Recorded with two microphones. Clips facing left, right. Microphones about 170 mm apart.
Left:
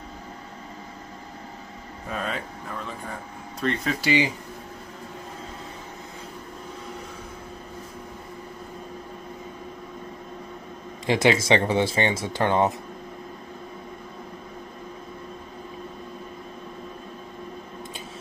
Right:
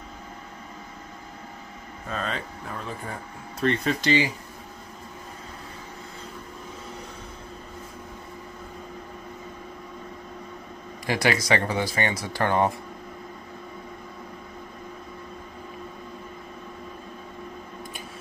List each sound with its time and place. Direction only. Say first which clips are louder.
2.0 s speech: left 1 dB; 5° left (ahead or behind)
3.6 s speech: right 2 dB; centre (ahead or behind)
11.1 s speech: left 4 dB; 20° left (ahead or behind)